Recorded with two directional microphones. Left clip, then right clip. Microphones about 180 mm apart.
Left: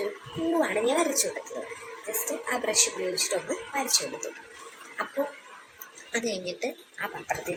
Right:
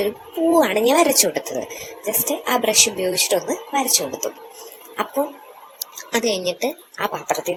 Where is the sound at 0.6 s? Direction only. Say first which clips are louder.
Right 8 dB; 40° right (ahead or behind).